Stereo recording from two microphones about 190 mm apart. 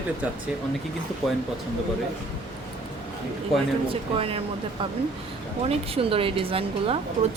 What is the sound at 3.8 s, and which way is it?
Speech, 30° right (ahead or behind).